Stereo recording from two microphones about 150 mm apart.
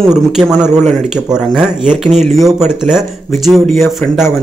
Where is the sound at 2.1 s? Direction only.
50° right (ahead or behind).